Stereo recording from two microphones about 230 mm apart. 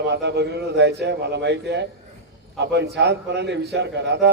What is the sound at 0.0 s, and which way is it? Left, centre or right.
A man's voice, right.